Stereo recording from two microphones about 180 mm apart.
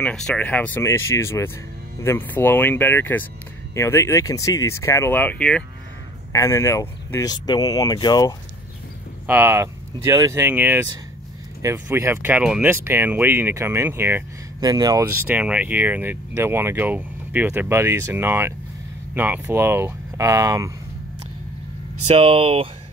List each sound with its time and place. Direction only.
0.0 s speech: 5° left (ahead or behind)
6.3 s speech: 20° left (ahead or behind)
9.3 s speech: 10° right (ahead or behind)
22.0 s speech: 35° right (ahead or behind)